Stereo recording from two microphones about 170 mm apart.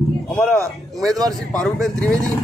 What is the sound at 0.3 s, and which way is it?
A man's voice, 5° left (ahead or behind).